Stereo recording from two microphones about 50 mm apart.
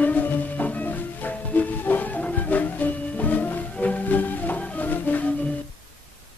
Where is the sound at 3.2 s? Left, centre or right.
Left.